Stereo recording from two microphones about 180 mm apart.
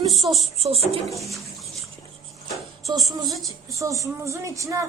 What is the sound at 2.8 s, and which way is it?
A woman's voice, 20° right (ahead or behind).